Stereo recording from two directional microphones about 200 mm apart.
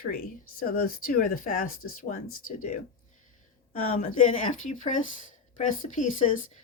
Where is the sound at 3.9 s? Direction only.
40° left (ahead or behind).